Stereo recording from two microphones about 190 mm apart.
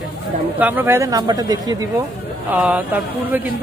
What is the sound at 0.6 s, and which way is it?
A man's voice, 10° right (ahead or behind).